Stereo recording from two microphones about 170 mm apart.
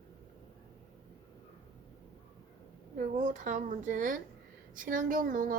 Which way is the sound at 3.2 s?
45° right (ahead or behind).